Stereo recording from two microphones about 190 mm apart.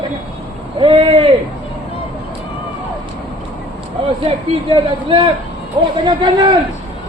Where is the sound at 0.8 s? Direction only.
30° right (ahead or behind).